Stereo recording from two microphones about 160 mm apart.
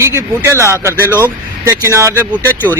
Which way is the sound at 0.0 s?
20° right (ahead or behind).